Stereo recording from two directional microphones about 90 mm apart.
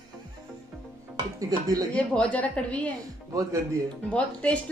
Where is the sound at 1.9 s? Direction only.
15° left (ahead or behind).